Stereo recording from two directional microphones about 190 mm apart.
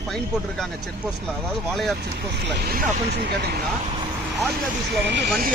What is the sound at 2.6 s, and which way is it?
Speech, 50° right (ahead or behind).